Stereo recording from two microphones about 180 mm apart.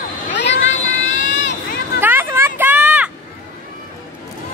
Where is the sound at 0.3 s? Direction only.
75° left (ahead or behind).